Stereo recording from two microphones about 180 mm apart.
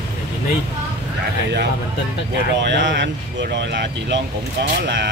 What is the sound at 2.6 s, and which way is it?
Speech, 80° right.